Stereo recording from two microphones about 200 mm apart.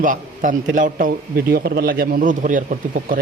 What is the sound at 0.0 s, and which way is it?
A man's voice, 40° right (ahead or behind).